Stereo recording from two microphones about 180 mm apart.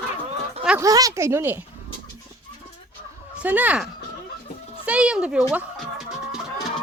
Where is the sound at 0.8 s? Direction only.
20° right (ahead or behind).